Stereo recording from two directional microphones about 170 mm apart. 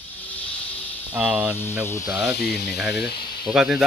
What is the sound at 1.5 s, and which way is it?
Speech, 15° left (ahead or behind).